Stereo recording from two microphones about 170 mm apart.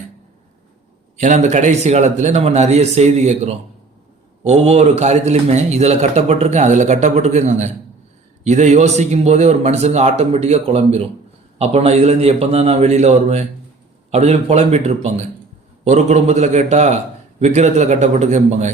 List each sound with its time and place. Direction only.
1.1 s a man's voice: 45° right (ahead or behind)